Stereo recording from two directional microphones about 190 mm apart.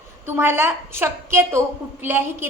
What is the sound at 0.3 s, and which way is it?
A woman's voice, 10° right (ahead or behind).